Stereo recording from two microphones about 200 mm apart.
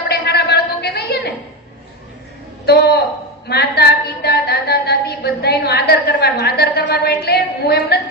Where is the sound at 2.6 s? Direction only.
55° left (ahead or behind).